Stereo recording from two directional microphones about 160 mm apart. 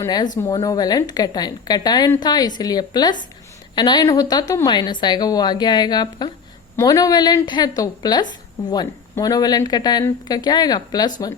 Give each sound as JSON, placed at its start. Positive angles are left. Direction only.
{"t": 0.0, "sound": "a woman's voice", "side_deg": 25}